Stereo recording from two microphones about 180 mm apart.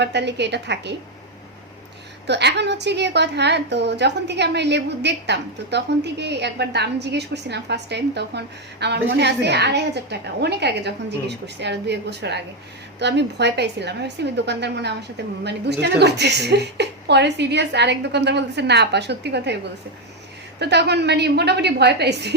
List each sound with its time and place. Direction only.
0.0 s a woman's voice: 70° right (ahead or behind)
2.2 s a woman's voice: 70° right (ahead or behind)
20.6 s a woman's voice: 70° right (ahead or behind)